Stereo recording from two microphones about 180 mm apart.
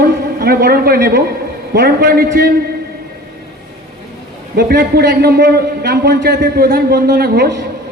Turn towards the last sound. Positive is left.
turn(degrees=-60)  # may be behind; listen again after turning